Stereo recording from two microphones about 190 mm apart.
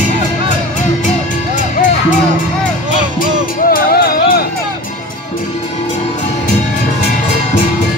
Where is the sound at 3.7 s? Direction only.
50° left (ahead or behind).